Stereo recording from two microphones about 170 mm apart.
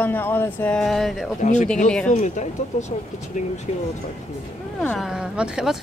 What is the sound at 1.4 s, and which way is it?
Speech, 45° left (ahead or behind).